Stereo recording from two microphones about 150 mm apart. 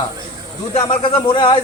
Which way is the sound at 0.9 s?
35° left (ahead or behind).